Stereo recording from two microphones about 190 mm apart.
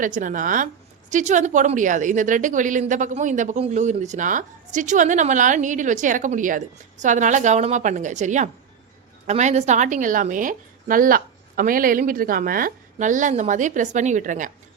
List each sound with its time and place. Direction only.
0.0 s a woman's voice: 45° right (ahead or behind)